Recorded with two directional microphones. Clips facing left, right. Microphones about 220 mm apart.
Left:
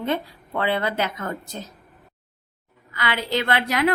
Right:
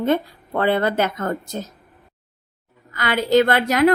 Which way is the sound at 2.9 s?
45° right (ahead or behind).